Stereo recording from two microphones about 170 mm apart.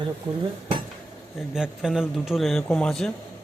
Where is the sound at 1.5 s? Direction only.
5° right (ahead or behind).